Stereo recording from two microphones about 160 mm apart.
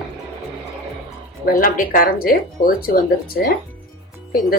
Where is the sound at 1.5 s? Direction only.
60° left (ahead or behind).